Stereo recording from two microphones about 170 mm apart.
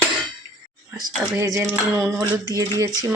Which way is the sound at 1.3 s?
20° right (ahead or behind).